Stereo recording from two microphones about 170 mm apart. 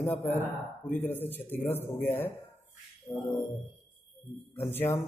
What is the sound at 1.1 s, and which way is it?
Speech, 10° left (ahead or behind).